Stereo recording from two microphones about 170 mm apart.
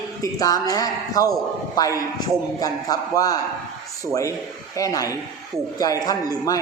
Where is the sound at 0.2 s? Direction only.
20° left (ahead or behind).